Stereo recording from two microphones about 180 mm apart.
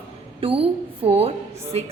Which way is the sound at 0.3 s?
30° right (ahead or behind).